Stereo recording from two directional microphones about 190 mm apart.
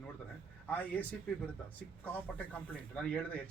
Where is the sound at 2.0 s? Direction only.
10° left (ahead or behind).